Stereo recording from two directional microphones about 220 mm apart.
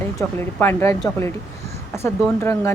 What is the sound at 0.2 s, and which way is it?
Speech, 10° left (ahead or behind).